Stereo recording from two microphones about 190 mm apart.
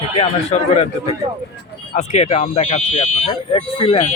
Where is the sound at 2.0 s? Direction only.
35° left (ahead or behind).